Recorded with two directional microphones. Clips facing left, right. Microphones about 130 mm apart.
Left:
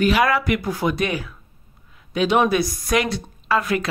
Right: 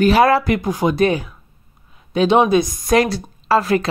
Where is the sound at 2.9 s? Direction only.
35° right (ahead or behind).